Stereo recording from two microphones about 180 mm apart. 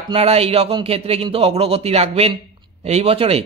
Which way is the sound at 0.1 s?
35° right (ahead or behind).